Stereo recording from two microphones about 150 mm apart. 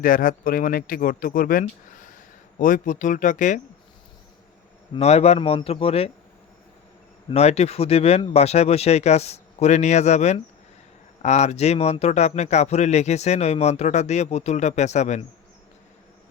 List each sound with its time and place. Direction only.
0.0 s speech: 65° left (ahead or behind)
4.9 s a man's voice: 45° left (ahead or behind)
7.3 s a man's voice: 45° left (ahead or behind)